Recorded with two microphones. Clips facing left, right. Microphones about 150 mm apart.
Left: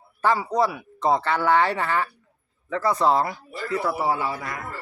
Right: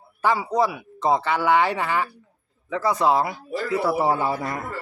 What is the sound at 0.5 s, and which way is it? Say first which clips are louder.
Speech: right 1 dB; 5° right (ahead or behind).